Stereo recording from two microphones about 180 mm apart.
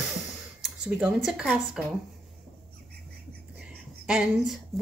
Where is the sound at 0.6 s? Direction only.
5° right (ahead or behind).